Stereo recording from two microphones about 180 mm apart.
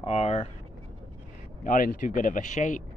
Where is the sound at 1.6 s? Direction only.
50° left (ahead or behind).